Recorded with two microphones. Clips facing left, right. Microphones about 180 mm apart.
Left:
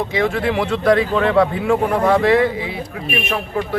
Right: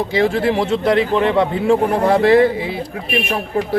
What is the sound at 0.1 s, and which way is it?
A man's voice, 30° right (ahead or behind).